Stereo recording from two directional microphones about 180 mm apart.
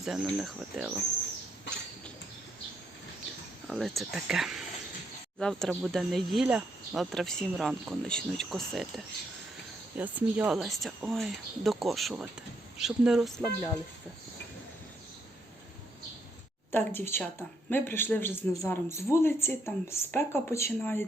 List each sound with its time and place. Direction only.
0.0 s speech: centre (ahead or behind)
3.7 s speech: centre (ahead or behind)
10.0 s speech: 10° right (ahead or behind)
16.7 s a man's voice: 10° left (ahead or behind)